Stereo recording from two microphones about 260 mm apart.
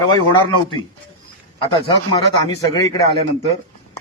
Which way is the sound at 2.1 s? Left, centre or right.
Centre.